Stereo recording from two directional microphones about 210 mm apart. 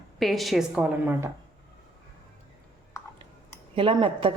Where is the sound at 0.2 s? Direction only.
Centre (ahead or behind).